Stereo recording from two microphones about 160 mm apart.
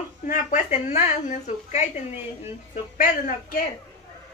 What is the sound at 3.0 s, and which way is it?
Speech, 60° left (ahead or behind).